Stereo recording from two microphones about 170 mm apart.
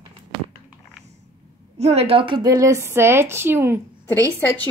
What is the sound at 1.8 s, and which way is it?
A woman's voice, 40° right (ahead or behind).